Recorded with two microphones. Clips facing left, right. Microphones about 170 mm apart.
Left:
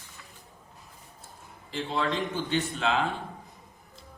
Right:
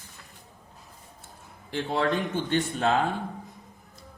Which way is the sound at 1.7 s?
60° right (ahead or behind).